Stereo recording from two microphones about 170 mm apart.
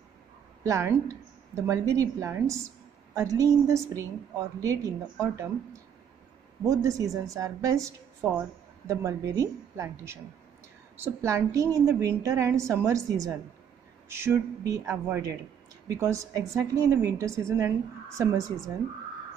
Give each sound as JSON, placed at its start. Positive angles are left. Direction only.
{"t": 0.7, "sound": "a woman's voice", "side_deg": -15}